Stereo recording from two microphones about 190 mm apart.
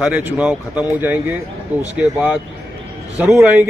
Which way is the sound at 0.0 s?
10° right (ahead or behind).